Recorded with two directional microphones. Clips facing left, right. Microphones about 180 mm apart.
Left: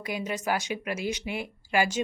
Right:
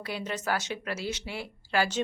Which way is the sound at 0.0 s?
10° left (ahead or behind).